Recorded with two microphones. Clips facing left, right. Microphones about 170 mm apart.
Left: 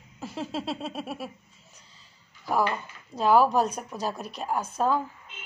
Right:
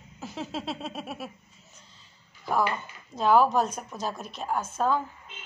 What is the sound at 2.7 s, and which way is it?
Speech, 5° left (ahead or behind).